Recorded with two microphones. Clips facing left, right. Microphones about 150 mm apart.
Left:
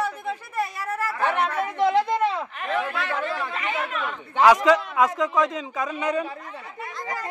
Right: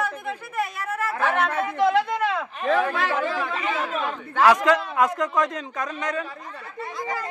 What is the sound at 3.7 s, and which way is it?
Speech, 30° right (ahead or behind).